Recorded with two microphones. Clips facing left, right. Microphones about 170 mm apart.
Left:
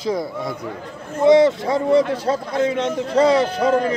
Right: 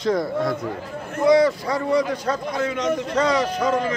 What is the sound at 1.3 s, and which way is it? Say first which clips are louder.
A man's voice: left 3 dB; 25° left (ahead or behind).